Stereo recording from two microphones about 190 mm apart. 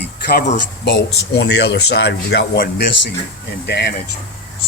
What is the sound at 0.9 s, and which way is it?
Speech, 70° left (ahead or behind).